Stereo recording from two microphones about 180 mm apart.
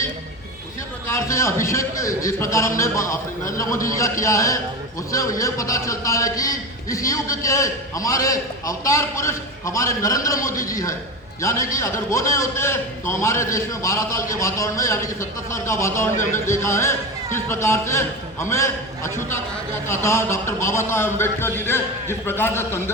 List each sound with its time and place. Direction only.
1.0 s a man's voice: 15° left (ahead or behind)